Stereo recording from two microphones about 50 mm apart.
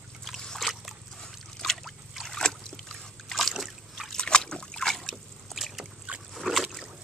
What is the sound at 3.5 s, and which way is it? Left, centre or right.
Boat, centre.